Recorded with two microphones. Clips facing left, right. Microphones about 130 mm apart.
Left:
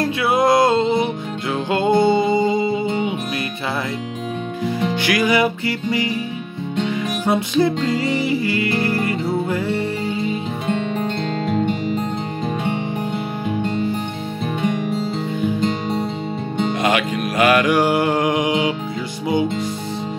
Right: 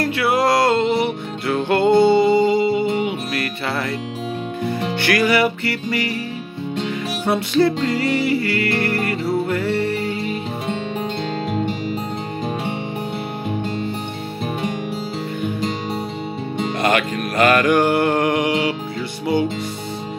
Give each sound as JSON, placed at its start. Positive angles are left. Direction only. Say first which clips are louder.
{"t": 0.0, "sound": "music", "louder": "left 1 dB", "side_deg": 20}
{"t": 5.0, "sound": "music", "louder": "right 1 dB", "side_deg": 15}
{"t": 7.2, "sound": "music", "louder": "right 1 dB", "side_deg": 20}
{"t": 11.4, "sound": "music", "louder": "left 5 dB", "side_deg": -5}
{"t": 16.8, "sound": "music", "louder": "right 2 dB", "side_deg": 10}